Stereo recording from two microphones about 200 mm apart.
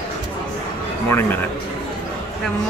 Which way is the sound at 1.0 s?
10° left (ahead or behind).